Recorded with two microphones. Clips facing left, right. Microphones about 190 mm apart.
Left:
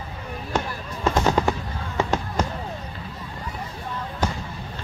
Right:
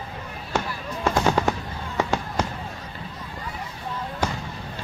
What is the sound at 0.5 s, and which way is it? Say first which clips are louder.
Fireworks: right 1 dB; 10° right (ahead or behind).